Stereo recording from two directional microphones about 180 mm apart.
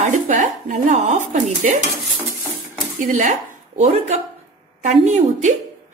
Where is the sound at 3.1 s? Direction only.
45° right (ahead or behind).